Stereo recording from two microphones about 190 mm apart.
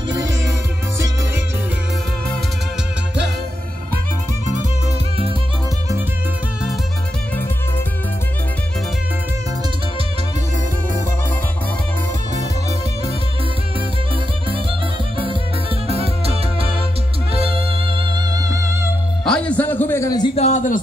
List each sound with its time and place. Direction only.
0.1 s music: 20° right (ahead or behind)
15.1 s music: 30° right (ahead or behind)
19.2 s music: 5° left (ahead or behind)
20.3 s a sound: 40° left (ahead or behind)